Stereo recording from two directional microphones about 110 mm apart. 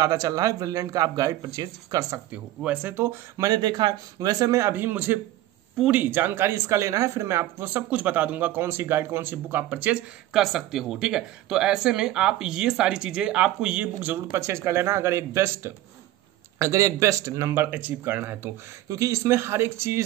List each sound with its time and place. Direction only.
0.0 s speech: 35° right (ahead or behind)
2.3 s speech: 15° right (ahead or behind)
3.4 s speech: 40° right (ahead or behind); by 14.2 s 15° right (ahead or behind)
14.3 s speech: 25° right (ahead or behind)